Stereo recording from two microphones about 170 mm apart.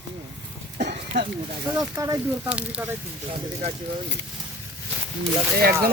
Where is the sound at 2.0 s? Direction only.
20° right (ahead or behind).